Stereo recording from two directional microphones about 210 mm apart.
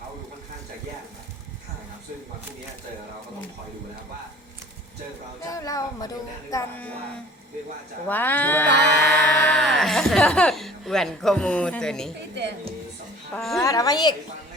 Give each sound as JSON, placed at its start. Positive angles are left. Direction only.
{"t": 5.5, "sound": "speech", "side_deg": 15}
{"t": 8.0, "sound": "speech", "side_deg": 10}
{"t": 13.3, "sound": "speech", "side_deg": 0}
{"t": 13.6, "sound": "speech", "side_deg": 15}